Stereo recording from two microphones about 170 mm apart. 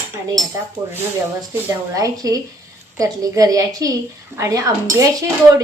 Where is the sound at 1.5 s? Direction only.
20° right (ahead or behind).